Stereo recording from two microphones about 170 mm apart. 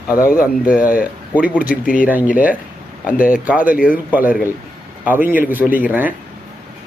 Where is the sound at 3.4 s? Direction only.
10° right (ahead or behind).